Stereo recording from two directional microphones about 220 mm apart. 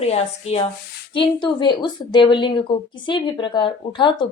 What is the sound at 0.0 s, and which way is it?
A woman's voice, 30° left (ahead or behind).